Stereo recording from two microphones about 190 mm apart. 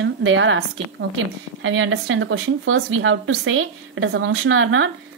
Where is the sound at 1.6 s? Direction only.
90° right.